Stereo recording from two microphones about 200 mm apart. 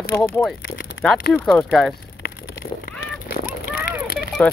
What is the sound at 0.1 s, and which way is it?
Speech, 5° left (ahead or behind).